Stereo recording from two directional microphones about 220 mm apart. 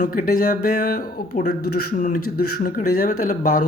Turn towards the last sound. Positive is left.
turn(degrees=40)  # may be behind; listen again after turning